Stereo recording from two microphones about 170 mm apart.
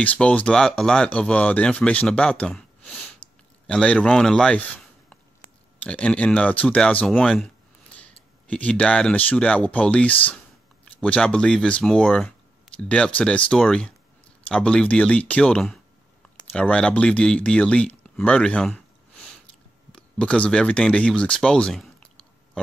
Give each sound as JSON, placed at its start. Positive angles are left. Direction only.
{"t": 0.0, "sound": "speech", "side_deg": 10}
{"t": 20.0, "sound": "speech", "side_deg": 5}